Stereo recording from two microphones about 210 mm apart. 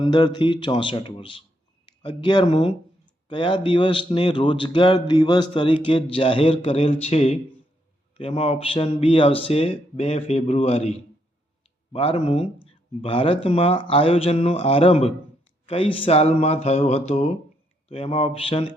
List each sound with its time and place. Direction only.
0.0 s a man's voice: 20° left (ahead or behind)
11.9 s a man's voice: 25° left (ahead or behind)